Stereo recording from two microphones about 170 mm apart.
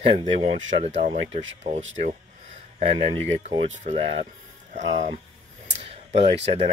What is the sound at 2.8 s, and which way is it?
Speech, 40° right (ahead or behind).